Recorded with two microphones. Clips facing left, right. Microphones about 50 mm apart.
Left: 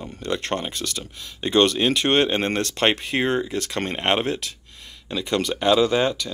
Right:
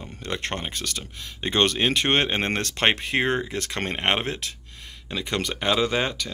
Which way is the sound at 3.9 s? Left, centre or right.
Right.